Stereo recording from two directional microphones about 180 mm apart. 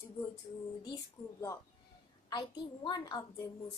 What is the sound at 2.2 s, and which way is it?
A woman's voice, 25° left (ahead or behind).